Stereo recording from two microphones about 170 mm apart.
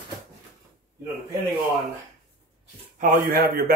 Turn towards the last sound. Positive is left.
turn(degrees=-60)  # may be behind; listen again after turning